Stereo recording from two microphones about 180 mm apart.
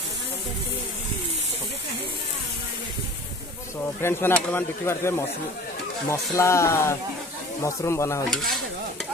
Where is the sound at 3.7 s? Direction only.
15° left (ahead or behind).